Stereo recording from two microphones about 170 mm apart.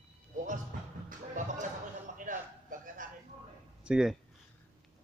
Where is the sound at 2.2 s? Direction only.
50° right (ahead or behind).